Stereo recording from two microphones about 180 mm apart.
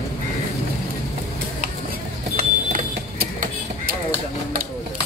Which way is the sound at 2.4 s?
55° right (ahead or behind).